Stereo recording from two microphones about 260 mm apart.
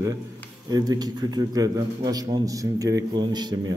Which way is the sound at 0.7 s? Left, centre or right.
Centre.